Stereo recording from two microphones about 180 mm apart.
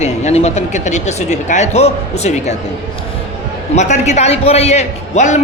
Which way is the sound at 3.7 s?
40° left (ahead or behind).